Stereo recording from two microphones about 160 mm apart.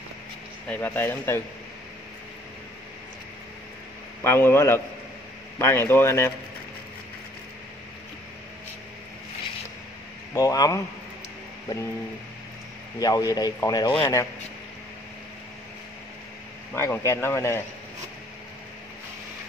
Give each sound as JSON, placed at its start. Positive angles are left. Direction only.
{"t": 0.7, "sound": "a man's voice", "side_deg": 10}
{"t": 4.2, "sound": "a man's voice", "side_deg": 15}
{"t": 10.3, "sound": "speech", "side_deg": 20}
{"t": 13.0, "sound": "speech", "side_deg": 25}
{"t": 16.7, "sound": "a man's voice", "side_deg": 15}